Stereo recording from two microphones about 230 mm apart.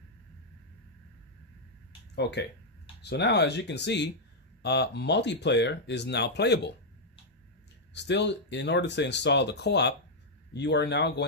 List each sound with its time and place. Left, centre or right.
2.1 s speech: left
7.9 s speech: left